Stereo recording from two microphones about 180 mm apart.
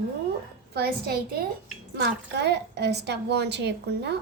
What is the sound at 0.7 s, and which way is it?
Speech, 60° right (ahead or behind).